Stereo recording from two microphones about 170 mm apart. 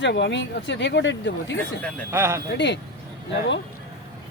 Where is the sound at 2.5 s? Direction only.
90° left.